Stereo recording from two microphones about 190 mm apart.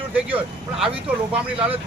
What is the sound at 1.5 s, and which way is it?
Speech, 30° right (ahead or behind).